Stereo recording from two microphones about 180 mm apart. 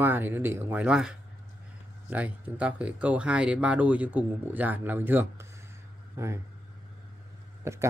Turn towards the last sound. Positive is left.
turn(degrees=-15)  # may be behind; listen again after turning